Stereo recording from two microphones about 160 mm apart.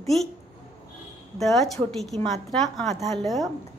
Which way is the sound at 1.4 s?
Centre (ahead or behind).